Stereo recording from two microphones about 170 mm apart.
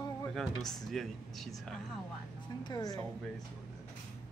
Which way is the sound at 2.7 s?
20° left (ahead or behind).